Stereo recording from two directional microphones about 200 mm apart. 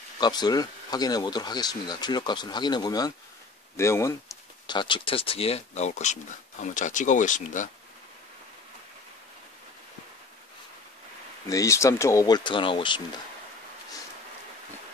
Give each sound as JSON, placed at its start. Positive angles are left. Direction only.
{"t": 0.2, "sound": "speech", "side_deg": 20}
{"t": 11.4, "sound": "speech", "side_deg": 15}